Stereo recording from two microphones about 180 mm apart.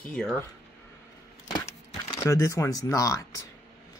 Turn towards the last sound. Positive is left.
turn(degrees=20)  # may be behind; listen again after turning